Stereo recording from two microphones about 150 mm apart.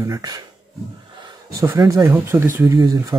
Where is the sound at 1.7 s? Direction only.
20° right (ahead or behind).